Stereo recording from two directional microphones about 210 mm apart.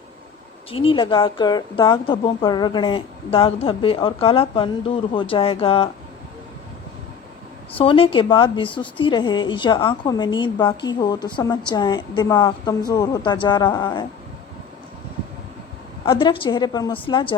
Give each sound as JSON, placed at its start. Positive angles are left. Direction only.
{"t": 0.7, "sound": "speech", "side_deg": 25}
{"t": 7.8, "sound": "speech", "side_deg": 25}
{"t": 16.0, "sound": "speech", "side_deg": 25}